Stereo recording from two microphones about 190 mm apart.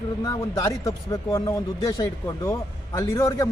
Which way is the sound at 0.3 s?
20° left (ahead or behind).